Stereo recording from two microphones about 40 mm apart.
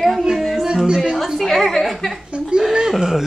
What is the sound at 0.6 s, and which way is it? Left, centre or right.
Speech, centre.